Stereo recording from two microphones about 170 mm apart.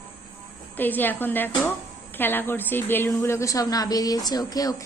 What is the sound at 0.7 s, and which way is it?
A woman's voice, 10° left (ahead or behind).